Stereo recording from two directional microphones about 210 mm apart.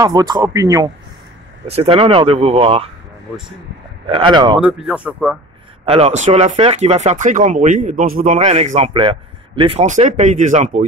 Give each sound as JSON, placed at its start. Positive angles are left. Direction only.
{"t": 0.0, "sound": "speech", "side_deg": -20}
{"t": 1.7, "sound": "speech", "side_deg": -25}
{"t": 4.1, "sound": "speech", "side_deg": -20}
{"t": 4.6, "sound": "speech", "side_deg": -5}
{"t": 5.9, "sound": "speech", "side_deg": -30}